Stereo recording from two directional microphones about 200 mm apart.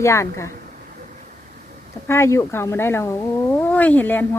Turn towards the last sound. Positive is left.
turn(degrees=10)  # may be behind; listen again after turning